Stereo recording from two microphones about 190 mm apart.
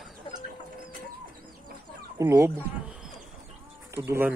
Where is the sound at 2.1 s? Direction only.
15° right (ahead or behind).